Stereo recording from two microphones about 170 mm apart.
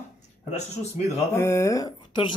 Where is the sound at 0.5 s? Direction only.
40° left (ahead or behind).